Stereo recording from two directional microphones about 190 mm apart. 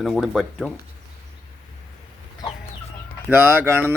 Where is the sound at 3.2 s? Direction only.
10° right (ahead or behind).